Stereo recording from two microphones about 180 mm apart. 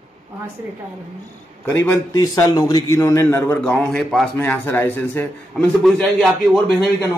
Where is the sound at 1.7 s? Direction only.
15° left (ahead or behind).